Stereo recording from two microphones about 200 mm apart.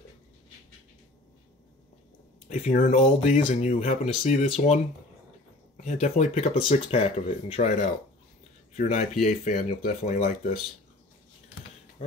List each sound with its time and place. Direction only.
2.4 s speech: 35° left (ahead or behind)
5.8 s speech: 35° left (ahead or behind)
8.7 s speech: 35° left (ahead or behind)